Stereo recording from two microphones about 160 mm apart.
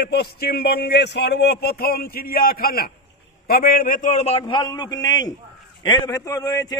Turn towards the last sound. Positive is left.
turn(degrees=20)  # may be behind; listen again after turning